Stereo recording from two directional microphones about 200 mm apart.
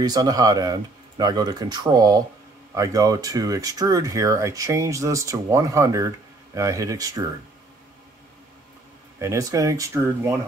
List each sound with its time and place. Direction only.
0.0 s speech: 20° right (ahead or behind)
9.2 s speech: 15° right (ahead or behind)